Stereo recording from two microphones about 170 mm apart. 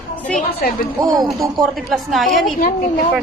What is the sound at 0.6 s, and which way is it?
Speech, 55° left (ahead or behind).